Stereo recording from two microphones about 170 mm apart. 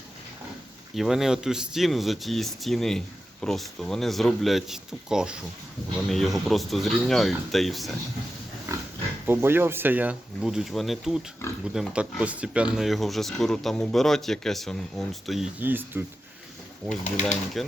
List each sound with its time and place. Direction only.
0.9 s speech: centre (ahead or behind)
9.2 s speech: 15° right (ahead or behind)
17.0 s speech: 45° left (ahead or behind)
17.6 s speech: centre (ahead or behind)